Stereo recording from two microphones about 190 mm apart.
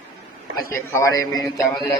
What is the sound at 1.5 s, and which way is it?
Mantra, centre (ahead or behind).